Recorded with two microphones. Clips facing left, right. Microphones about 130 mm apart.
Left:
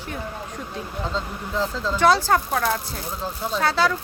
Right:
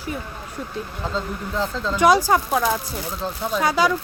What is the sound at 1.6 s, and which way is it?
Speech, centre (ahead or behind).